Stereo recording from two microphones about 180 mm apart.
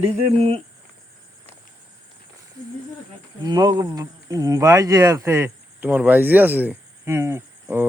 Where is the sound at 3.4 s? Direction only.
20° right (ahead or behind).